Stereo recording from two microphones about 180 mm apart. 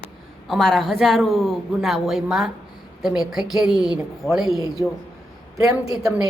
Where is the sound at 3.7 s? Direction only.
20° left (ahead or behind).